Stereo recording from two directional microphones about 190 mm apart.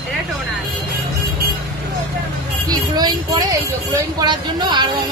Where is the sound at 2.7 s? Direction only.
20° right (ahead or behind).